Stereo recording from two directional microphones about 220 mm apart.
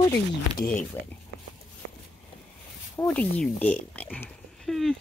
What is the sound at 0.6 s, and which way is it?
Speech, 40° left (ahead or behind).